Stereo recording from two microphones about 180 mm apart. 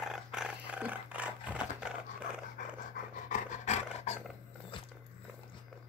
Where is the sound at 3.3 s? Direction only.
40° left (ahead or behind).